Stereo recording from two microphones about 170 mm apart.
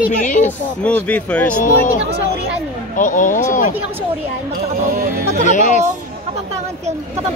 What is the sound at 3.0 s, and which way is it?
Speech, 50° left (ahead or behind).